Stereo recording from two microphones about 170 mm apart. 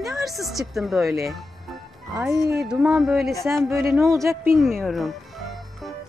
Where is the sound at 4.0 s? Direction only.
15° right (ahead or behind).